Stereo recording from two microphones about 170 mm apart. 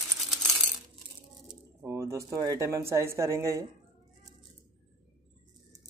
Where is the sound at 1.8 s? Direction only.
15° right (ahead or behind).